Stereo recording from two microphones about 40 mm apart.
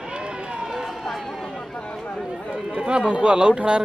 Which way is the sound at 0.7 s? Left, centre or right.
Centre.